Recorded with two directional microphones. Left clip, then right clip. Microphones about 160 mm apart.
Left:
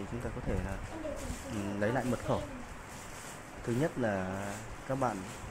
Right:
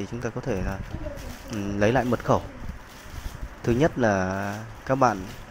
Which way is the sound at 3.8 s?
40° right (ahead or behind).